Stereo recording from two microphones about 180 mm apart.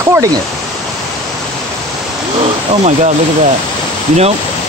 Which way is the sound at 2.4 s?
40° right (ahead or behind).